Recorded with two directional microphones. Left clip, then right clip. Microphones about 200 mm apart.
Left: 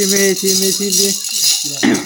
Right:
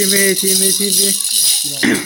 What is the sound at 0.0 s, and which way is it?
Speech, 5° left (ahead or behind).